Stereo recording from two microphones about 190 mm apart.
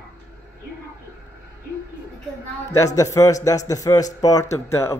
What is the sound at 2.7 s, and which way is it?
A man's voice, 15° left (ahead or behind).